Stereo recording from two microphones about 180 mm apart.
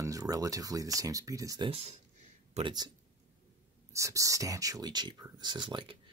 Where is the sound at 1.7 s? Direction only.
35° right (ahead or behind).